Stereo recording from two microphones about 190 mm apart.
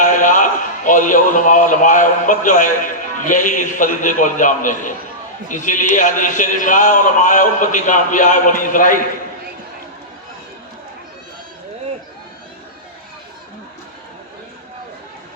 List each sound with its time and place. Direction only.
0.0 s a man's voice: 45° left (ahead or behind)